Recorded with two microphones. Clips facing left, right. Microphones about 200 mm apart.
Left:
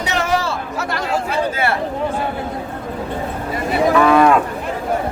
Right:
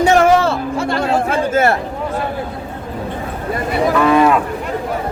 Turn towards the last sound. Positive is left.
turn(degrees=-5)  # may be behind; listen again after turning